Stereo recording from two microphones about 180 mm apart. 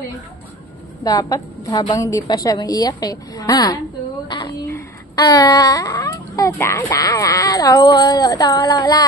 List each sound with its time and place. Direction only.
1.0 s speech: 20° left (ahead or behind)
4.3 s a sound: 25° left (ahead or behind)
4.6 s speech: 15° left (ahead or behind)